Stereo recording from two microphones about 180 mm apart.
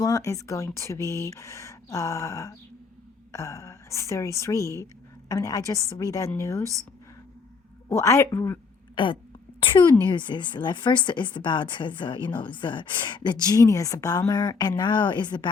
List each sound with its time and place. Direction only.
0.0 s speech: 15° left (ahead or behind)
7.9 s speech: 15° left (ahead or behind)
9.0 s a woman's voice: 25° left (ahead or behind)